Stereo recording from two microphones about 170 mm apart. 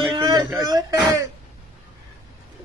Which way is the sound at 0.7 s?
20° right (ahead or behind).